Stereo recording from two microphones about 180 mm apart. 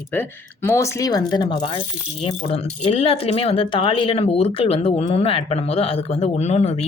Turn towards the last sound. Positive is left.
turn(degrees=40)  # may be behind; listen again after turning